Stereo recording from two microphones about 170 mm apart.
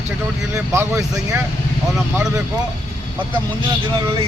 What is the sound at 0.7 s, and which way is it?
Speech, 15° right (ahead or behind).